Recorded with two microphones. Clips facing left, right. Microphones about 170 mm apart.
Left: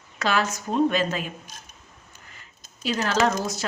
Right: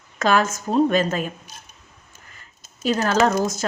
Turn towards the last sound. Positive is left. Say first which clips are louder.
# right 4 dB
turn(degrees=-45)  # may be behind; listen again after turning